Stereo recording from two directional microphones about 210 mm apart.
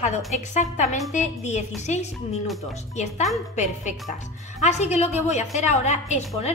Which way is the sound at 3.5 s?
35° left (ahead or behind).